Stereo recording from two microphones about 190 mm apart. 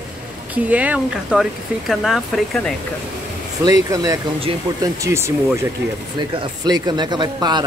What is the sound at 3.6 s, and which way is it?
Speech, 20° right (ahead or behind).